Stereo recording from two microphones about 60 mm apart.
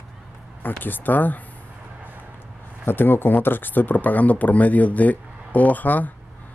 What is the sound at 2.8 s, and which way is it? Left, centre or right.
Speech, left.